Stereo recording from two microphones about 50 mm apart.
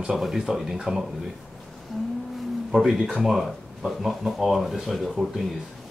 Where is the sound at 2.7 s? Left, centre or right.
Centre.